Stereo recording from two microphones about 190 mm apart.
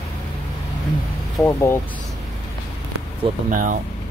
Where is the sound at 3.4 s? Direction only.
45° right (ahead or behind).